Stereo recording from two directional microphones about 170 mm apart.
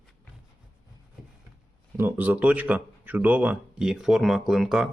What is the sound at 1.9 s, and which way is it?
Speech, 10° right (ahead or behind).